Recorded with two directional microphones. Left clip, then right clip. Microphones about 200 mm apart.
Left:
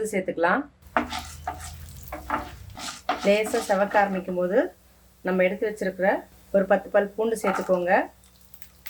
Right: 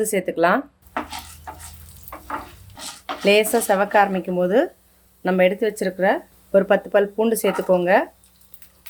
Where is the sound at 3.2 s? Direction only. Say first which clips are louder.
Right 6 dB; 50° right (ahead or behind).